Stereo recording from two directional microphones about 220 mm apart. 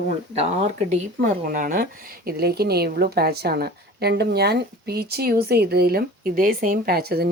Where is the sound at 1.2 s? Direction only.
35° right (ahead or behind).